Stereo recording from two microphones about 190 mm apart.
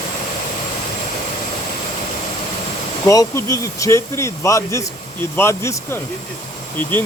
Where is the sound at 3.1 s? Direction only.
15° left (ahead or behind).